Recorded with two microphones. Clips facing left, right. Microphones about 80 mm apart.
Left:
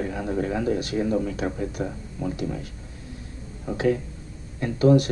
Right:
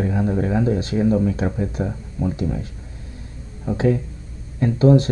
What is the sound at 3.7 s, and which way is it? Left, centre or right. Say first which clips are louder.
Speech: right 3 dB; right.